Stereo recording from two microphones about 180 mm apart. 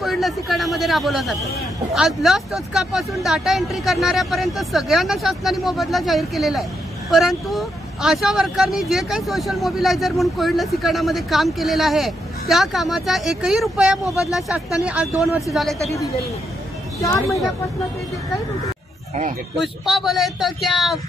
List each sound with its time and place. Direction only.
0.0 s speech: centre (ahead or behind)
17.0 s speech: 15° left (ahead or behind)
19.6 s speech: centre (ahead or behind)